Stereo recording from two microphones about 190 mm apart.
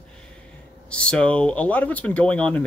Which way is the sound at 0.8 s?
5° left (ahead or behind).